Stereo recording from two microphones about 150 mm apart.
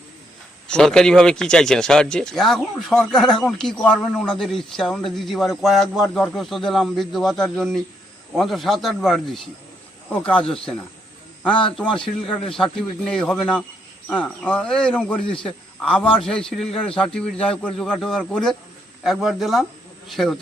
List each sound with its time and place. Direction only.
0.7 s speech: 5° left (ahead or behind)
11.8 s a man's voice: 5° left (ahead or behind)